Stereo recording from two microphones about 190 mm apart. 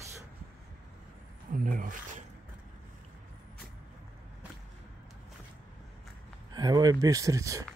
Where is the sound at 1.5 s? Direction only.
45° right (ahead or behind).